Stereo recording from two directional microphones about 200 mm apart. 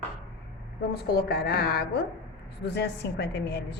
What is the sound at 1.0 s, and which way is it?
A woman's voice, 55° left (ahead or behind).